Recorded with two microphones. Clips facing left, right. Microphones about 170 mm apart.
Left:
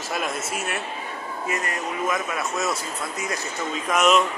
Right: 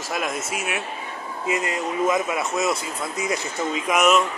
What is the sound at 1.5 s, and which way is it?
A man's voice, 20° right (ahead or behind).